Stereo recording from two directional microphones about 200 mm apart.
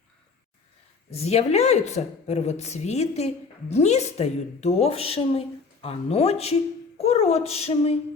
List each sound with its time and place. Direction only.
1.1 s a woman's voice: 30° left (ahead or behind)